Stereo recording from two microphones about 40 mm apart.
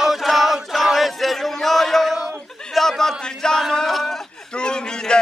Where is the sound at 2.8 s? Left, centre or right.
Centre.